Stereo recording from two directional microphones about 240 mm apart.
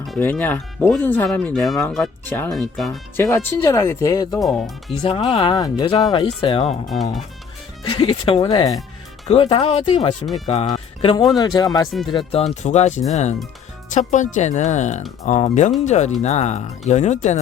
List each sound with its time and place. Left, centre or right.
0.1 s speech: centre
3.2 s speech: centre
4.3 s speech: centre
4.9 s speech: left
6.8 s speech: centre
7.9 s speech: centre